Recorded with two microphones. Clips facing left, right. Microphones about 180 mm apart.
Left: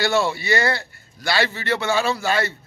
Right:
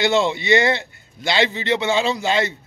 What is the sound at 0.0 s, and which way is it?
A man's voice, 20° right (ahead or behind).